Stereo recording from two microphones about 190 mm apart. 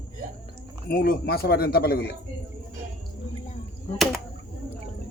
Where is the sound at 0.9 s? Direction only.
50° left (ahead or behind).